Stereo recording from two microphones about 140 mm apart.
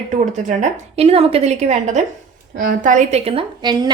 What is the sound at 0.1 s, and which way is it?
A woman's voice, 60° right (ahead or behind).